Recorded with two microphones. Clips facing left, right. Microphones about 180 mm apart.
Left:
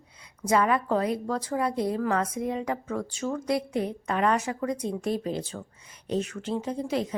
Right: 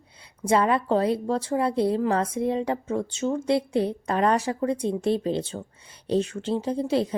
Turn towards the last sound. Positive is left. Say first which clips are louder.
# right 4 dB
turn(degrees=-30)  # may be behind; listen again after turning